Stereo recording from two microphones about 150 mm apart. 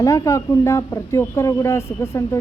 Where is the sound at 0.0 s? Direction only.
20° left (ahead or behind).